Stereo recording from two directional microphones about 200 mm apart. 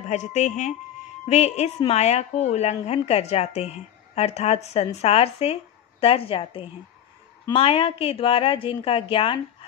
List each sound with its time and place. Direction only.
0.1 s a woman's voice: 35° left (ahead or behind)